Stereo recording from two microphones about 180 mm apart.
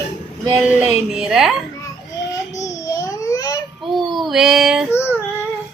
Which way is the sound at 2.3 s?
20° left (ahead or behind).